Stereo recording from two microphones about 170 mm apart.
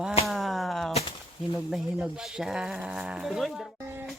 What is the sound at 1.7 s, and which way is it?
Speech, 5° right (ahead or behind).